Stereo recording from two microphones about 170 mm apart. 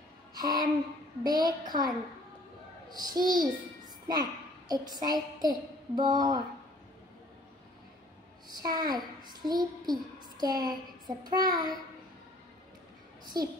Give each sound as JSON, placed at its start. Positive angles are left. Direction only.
{"t": 0.3, "sound": "a sound", "side_deg": -25}
{"t": 1.2, "sound": "a woman's voice", "side_deg": -25}
{"t": 8.5, "sound": "a woman's voice", "side_deg": -25}
{"t": 13.2, "sound": "a child's voice", "side_deg": -25}